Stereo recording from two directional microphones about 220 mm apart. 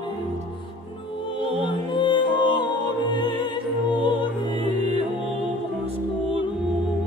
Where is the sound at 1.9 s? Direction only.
20° left (ahead or behind).